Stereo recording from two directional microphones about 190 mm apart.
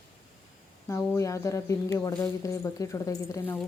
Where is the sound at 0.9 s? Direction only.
15° left (ahead or behind).